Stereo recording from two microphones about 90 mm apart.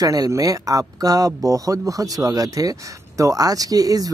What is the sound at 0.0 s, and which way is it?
Speech, 45° right (ahead or behind).